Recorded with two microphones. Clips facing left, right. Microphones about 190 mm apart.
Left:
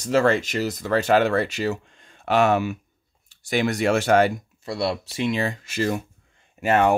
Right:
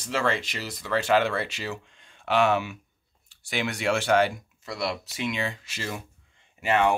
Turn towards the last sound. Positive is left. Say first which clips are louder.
# left 4 dB
turn(degrees=45)  # may be behind; listen again after turning